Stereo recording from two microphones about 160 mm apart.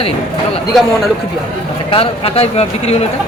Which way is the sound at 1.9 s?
35° left (ahead or behind).